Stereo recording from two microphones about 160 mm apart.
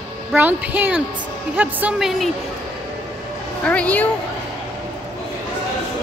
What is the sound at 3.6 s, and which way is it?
Speech, 10° left (ahead or behind).